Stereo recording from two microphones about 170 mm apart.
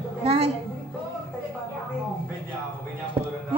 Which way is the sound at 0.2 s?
35° right (ahead or behind).